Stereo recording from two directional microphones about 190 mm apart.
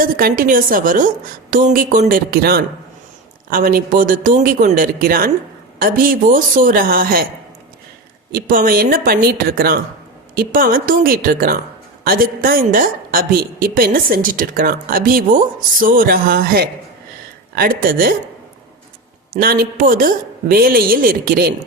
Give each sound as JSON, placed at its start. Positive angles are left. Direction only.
{"t": 0.0, "sound": "a woman's voice", "side_deg": -50}
{"t": 8.3, "sound": "a woman's voice", "side_deg": -50}
{"t": 19.3, "sound": "a woman's voice", "side_deg": -50}